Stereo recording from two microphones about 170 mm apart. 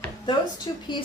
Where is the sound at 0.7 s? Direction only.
25° left (ahead or behind).